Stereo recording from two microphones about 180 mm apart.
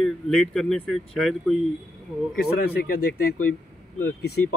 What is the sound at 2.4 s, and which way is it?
Speech, 60° left (ahead or behind).